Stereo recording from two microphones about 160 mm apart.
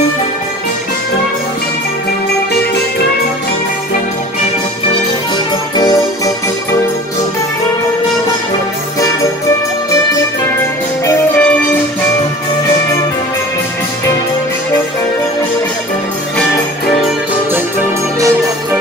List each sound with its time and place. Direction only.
5.8 s music: 20° left (ahead or behind)
11.1 s music: 10° left (ahead or behind)